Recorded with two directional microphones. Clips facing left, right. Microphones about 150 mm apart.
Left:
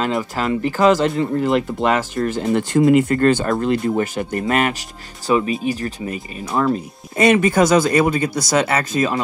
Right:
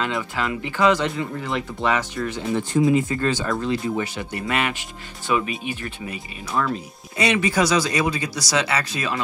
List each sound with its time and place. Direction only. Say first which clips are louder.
0.0 s speech: left 5 dB; 40° left (ahead or behind)
2.3 s speech: left 4 dB; 85° left; by 9.2 s 45° left (ahead or behind)